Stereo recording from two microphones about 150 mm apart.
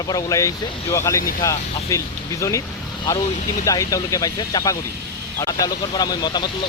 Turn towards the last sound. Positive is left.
turn(degrees=30)  # may be behind; listen again after turning